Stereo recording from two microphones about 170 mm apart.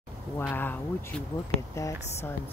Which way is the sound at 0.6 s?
10° left (ahead or behind).